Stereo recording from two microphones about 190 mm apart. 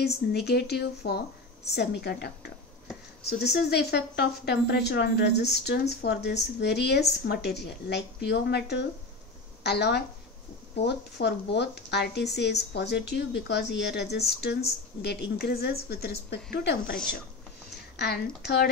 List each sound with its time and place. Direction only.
0.3 s speech: 55° left (ahead or behind)
17.9 s speech: 55° left (ahead or behind)